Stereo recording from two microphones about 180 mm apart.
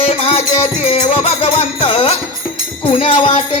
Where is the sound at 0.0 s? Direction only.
35° left (ahead or behind).